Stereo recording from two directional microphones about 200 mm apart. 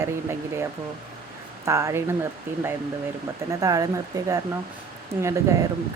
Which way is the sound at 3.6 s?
15° right (ahead or behind).